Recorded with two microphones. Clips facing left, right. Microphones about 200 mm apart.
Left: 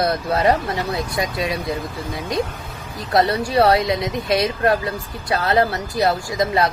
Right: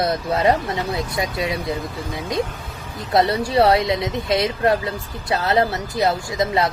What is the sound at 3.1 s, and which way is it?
Speech, 25° right (ahead or behind).